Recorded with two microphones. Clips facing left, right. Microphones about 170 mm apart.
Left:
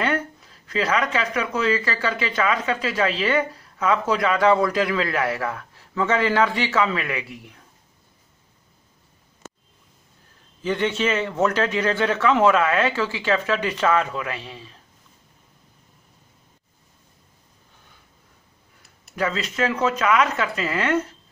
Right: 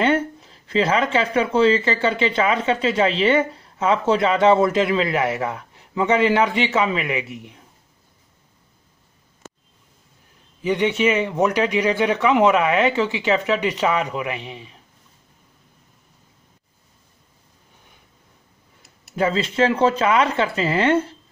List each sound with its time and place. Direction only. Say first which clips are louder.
0.0 s speech: right 5 dB; 25° right (ahead or behind)
10.6 s speech: right 4 dB; 15° right (ahead or behind)
19.1 s speech: right 5 dB; 25° right (ahead or behind)